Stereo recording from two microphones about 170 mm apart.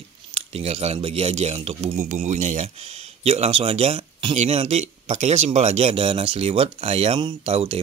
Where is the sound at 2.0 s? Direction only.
50° right (ahead or behind).